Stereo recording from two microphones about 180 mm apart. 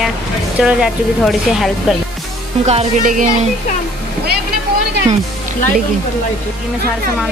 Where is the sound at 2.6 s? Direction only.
35° right (ahead or behind).